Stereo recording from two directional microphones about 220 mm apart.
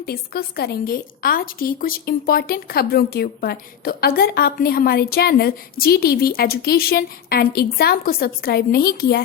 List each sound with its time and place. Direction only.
0.0 s a woman's voice: 45° left (ahead or behind)